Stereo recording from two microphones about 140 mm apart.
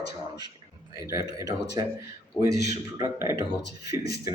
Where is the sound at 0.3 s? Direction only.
30° right (ahead or behind).